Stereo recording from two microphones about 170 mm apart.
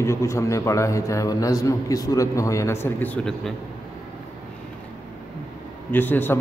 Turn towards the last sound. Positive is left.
turn(degrees=10)  # may be behind; listen again after turning